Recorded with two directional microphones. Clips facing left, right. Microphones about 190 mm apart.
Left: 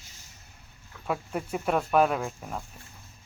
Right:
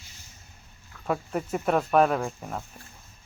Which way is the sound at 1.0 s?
Centre (ahead or behind).